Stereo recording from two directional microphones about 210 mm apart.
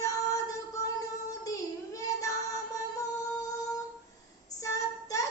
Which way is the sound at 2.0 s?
15° left (ahead or behind).